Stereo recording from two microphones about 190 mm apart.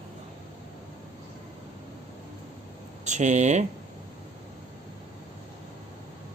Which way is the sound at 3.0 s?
40° right (ahead or behind).